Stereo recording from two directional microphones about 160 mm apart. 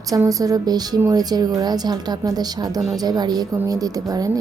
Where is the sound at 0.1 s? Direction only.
20° right (ahead or behind).